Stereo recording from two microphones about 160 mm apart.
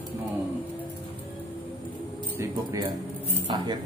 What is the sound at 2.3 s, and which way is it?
Speech, 15° right (ahead or behind).